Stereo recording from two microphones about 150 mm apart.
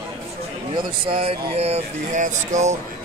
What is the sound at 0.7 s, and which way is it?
Speech, 35° right (ahead or behind).